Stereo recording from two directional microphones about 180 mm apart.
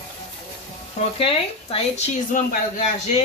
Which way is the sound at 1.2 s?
35° left (ahead or behind).